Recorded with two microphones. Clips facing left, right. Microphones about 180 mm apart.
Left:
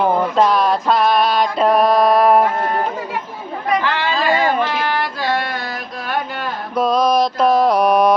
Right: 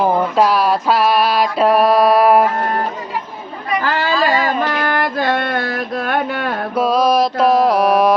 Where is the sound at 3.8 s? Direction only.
40° right (ahead or behind); by 6.6 s 60° right (ahead or behind).